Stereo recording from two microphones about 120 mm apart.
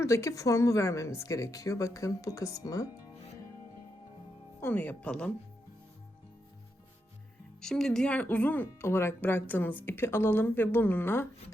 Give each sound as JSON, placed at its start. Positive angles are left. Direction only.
{"t": 0.0, "sound": "speech", "side_deg": 25}
{"t": 4.6, "sound": "speech", "side_deg": 15}
{"t": 7.6, "sound": "speech", "side_deg": 5}